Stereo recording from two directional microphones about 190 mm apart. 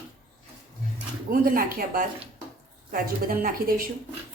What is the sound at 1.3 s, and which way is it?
Speech, 50° right (ahead or behind).